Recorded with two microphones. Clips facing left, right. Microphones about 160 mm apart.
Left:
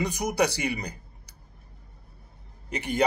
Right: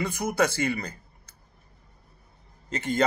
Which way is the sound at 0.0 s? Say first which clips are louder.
Even; 15° left (ahead or behind).